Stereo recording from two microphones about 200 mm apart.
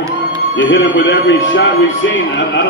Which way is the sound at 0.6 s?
70° left (ahead or behind).